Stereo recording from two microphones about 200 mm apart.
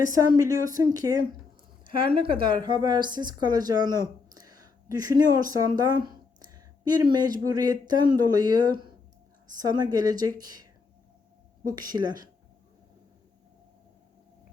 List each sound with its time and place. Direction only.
0.0 s a woman's voice: 15° right (ahead or behind)
11.7 s a woman's voice: 20° right (ahead or behind)